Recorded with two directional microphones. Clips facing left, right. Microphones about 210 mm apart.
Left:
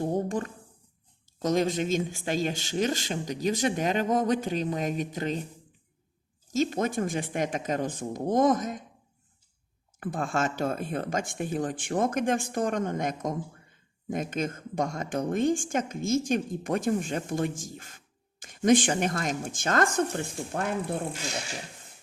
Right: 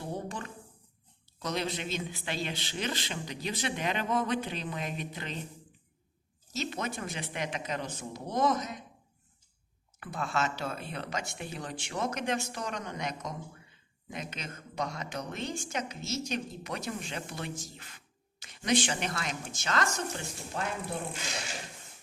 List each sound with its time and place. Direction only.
0.0 s a sound: 45° left (ahead or behind)
1.4 s speech: 45° left (ahead or behind)
6.5 s speech: 45° left (ahead or behind)
10.0 s speech: 50° left (ahead or behind)